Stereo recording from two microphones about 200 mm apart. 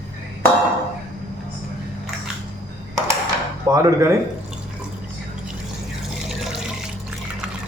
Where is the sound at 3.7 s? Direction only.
15° right (ahead or behind).